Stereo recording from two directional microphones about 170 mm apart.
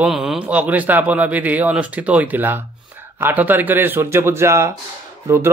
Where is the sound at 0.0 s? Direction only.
5° right (ahead or behind).